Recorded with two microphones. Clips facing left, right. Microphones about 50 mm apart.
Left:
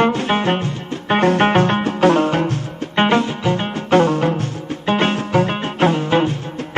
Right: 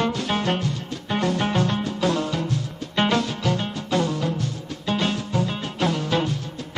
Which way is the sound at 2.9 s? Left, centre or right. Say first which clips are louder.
Left 6 dB; left.